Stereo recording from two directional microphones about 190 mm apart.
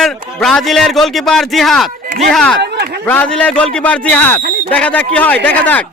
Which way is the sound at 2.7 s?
60° right (ahead or behind).